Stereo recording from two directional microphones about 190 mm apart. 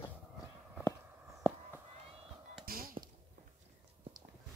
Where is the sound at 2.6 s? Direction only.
50° right (ahead or behind).